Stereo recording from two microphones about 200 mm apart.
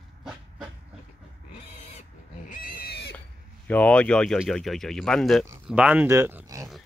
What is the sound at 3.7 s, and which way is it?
Speech, 5° left (ahead or behind).